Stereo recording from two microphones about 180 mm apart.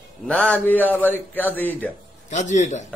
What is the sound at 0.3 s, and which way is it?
A man's voice, 5° left (ahead or behind).